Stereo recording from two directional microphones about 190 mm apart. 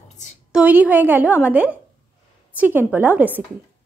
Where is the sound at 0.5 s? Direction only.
5° right (ahead or behind).